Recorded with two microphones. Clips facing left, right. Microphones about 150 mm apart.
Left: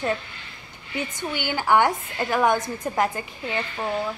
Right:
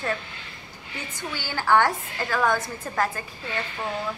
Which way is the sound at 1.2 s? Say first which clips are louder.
Left 2 dB; 20° left (ahead or behind).